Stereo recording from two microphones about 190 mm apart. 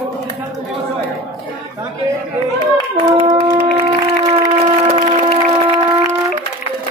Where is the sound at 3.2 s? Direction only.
20° right (ahead or behind).